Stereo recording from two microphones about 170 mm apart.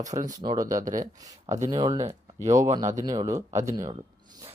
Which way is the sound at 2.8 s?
45° right (ahead or behind).